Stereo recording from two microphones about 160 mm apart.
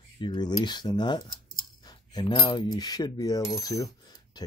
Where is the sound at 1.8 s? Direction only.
25° left (ahead or behind).